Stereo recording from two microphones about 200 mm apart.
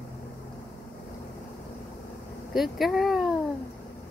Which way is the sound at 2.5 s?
Centre (ahead or behind).